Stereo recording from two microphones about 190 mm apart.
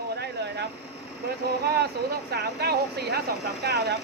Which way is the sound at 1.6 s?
55° right (ahead or behind).